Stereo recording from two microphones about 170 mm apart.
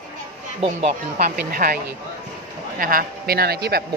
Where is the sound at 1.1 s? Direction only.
60° right (ahead or behind).